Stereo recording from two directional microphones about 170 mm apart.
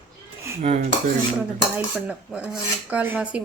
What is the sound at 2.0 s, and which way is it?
Filing, 5° right (ahead or behind).